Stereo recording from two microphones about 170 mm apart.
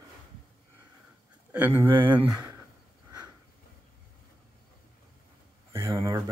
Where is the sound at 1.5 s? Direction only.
10° right (ahead or behind).